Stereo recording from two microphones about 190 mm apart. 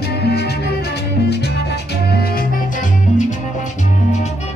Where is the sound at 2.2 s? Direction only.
50° left (ahead or behind).